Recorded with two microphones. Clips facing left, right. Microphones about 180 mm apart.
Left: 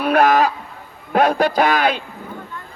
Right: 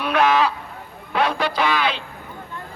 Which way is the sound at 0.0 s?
40° left (ahead or behind).